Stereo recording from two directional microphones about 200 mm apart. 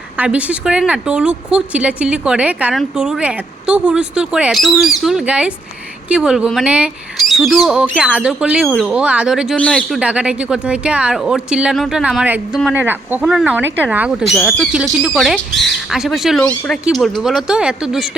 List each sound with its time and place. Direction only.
0.2 s speech: 5° right (ahead or behind)